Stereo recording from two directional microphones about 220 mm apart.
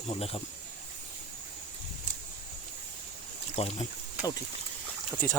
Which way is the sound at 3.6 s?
25° left (ahead or behind).